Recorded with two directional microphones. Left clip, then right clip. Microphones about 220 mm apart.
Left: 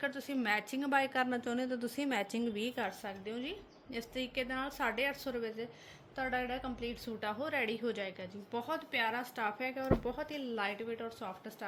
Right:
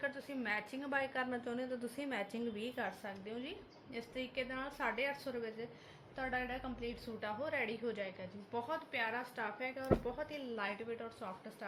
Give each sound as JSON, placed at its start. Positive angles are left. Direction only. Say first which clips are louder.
{"t": 0.0, "sound": "a woman's voice", "louder": "left 4 dB", "side_deg": 50}